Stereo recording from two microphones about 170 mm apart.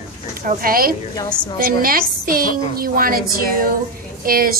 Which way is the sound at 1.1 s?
25° left (ahead or behind).